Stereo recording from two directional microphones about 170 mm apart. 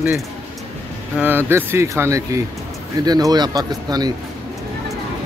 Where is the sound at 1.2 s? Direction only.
10° right (ahead or behind).